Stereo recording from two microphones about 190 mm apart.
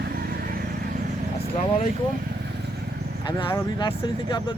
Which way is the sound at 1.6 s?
40° left (ahead or behind).